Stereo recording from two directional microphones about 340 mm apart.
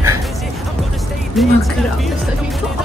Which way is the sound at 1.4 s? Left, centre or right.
Centre.